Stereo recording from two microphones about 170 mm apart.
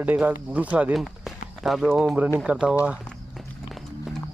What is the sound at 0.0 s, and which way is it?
Speech, 10° right (ahead or behind).